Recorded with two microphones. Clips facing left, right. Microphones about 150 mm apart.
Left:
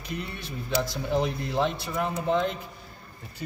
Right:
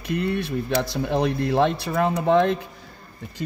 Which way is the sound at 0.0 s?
70° right (ahead or behind).